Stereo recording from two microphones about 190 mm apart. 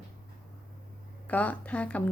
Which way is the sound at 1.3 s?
10° left (ahead or behind).